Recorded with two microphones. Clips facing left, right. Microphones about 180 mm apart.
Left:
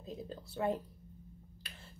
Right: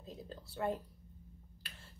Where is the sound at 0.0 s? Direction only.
15° left (ahead or behind).